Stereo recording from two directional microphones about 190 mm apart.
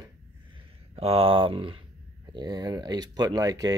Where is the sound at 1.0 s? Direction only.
30° right (ahead or behind).